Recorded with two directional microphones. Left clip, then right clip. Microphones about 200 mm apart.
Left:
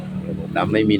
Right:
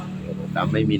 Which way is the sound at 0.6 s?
20° left (ahead or behind).